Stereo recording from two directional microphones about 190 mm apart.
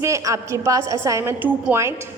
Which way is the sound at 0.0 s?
15° right (ahead or behind).